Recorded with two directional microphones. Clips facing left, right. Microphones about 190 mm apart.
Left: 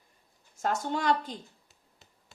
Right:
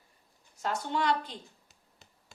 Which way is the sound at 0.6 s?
45° left (ahead or behind).